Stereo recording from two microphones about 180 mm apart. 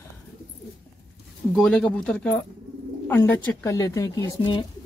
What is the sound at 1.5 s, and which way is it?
Speech, 5° left (ahead or behind).